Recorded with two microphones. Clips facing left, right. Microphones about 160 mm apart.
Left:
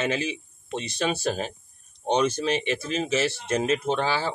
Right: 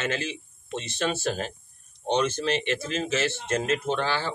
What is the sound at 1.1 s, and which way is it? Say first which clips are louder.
Speech: left 2 dB; 10° left (ahead or behind).